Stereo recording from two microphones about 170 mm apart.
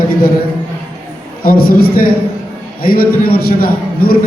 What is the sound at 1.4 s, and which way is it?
A man's voice, 60° left (ahead or behind).